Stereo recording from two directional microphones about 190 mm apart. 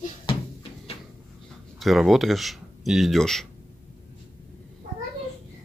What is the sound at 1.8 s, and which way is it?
Speech, centre (ahead or behind).